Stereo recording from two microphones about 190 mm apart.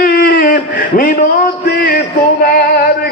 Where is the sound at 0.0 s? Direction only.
50° left (ahead or behind).